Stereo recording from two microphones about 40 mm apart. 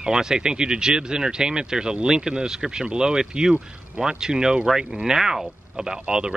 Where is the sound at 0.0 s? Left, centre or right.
Centre.